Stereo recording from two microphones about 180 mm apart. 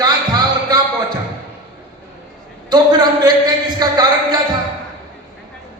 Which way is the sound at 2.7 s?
25° right (ahead or behind).